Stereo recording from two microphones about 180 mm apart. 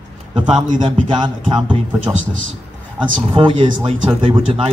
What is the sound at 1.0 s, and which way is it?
Speech, 25° right (ahead or behind).